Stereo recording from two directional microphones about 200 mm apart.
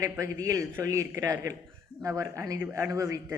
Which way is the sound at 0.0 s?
15° right (ahead or behind).